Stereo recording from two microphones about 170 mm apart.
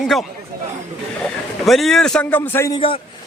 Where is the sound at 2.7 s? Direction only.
30° left (ahead or behind).